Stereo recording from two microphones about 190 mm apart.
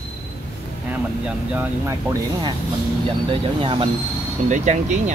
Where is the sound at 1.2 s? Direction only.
10° right (ahead or behind).